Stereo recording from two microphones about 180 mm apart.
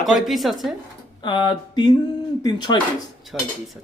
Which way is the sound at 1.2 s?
25° left (ahead or behind).